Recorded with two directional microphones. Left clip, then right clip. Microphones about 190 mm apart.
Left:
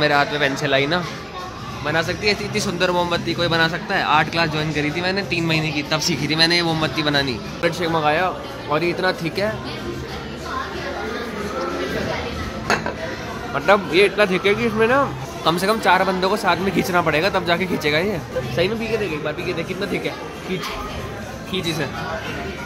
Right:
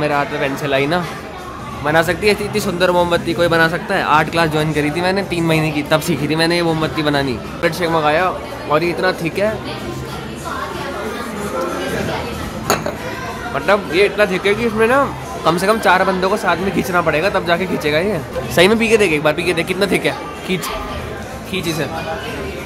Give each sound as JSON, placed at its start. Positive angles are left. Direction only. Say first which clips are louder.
{"t": 0.0, "sound": "speech", "louder": "even", "side_deg": 5}
{"t": 1.9, "sound": "speech", "louder": "right 6 dB", "side_deg": -15}
{"t": 2.5, "sound": "speech", "louder": "right 5 dB", "side_deg": -5}
{"t": 13.7, "sound": "speech", "louder": "right 1 dB", "side_deg": 10}
{"t": 18.6, "sound": "speech", "louder": "right 10 dB", "side_deg": -30}